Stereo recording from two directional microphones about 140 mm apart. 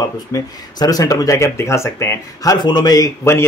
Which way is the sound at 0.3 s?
25° left (ahead or behind).